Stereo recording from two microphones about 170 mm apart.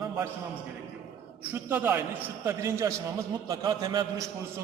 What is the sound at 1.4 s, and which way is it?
A man's voice, 10° right (ahead or behind).